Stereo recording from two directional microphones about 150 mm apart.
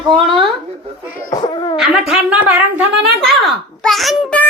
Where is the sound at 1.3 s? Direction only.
25° left (ahead or behind).